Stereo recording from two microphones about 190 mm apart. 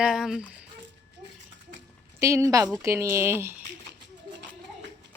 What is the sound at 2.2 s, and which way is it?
Speech, 15° right (ahead or behind).